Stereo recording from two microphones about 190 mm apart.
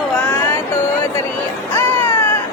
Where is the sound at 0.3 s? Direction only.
10° left (ahead or behind).